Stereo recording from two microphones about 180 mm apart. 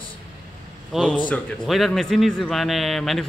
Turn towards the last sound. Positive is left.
turn(degrees=0)  # may be behind; listen again after turning